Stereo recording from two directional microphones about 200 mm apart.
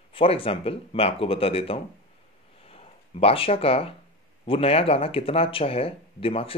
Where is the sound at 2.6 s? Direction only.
30° left (ahead or behind).